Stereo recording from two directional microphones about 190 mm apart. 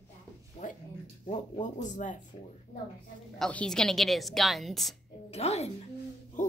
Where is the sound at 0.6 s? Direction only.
45° left (ahead or behind).